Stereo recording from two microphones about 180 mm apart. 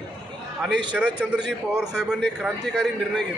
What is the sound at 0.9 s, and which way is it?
A man's voice, 5° right (ahead or behind).